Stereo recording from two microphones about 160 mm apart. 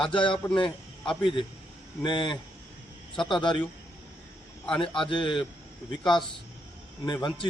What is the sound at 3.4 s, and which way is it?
Speech, 30° left (ahead or behind).